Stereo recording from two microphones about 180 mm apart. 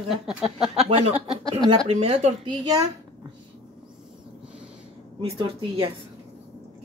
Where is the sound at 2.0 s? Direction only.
35° right (ahead or behind).